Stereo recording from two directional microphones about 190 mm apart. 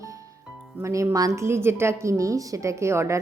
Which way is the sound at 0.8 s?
15° right (ahead or behind).